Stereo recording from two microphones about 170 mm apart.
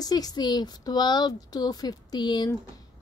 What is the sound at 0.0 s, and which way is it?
Speech, 20° left (ahead or behind).